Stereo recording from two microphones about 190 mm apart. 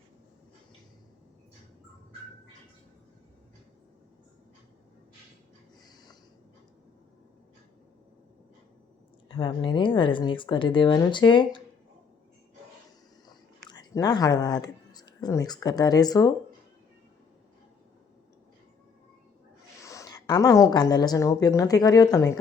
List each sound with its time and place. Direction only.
9.3 s a woman's voice: 25° left (ahead or behind)
13.2 s speech: 20° left (ahead or behind)
19.8 s a woman's voice: 15° left (ahead or behind)